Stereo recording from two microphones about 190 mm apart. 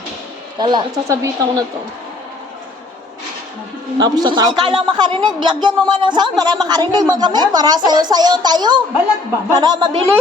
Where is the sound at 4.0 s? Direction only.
20° right (ahead or behind).